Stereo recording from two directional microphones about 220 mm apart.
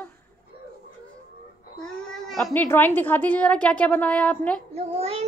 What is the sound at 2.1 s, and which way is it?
A woman's voice, centre (ahead or behind).